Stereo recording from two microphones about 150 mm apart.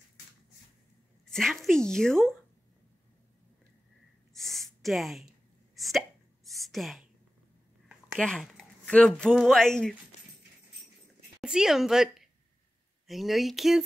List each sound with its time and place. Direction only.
1.2 s speech: 5° left (ahead or behind)
4.4 s a sound: centre (ahead or behind)
5.8 s hiccup: centre (ahead or behind)
8.2 s speech: 5° left (ahead or behind)
11.4 s a woman's voice: 5° right (ahead or behind)